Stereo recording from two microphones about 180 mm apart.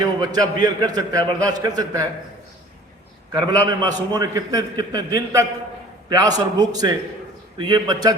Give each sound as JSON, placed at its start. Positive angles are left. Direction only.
{"t": 0.0, "sound": "a man's voice", "side_deg": -20}
{"t": 3.3, "sound": "a man's voice", "side_deg": -25}